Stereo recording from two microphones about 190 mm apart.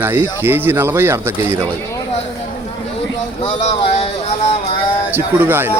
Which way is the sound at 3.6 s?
30° left (ahead or behind).